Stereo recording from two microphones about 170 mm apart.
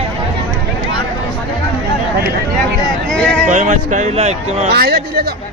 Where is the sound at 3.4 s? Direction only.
45° right (ahead or behind).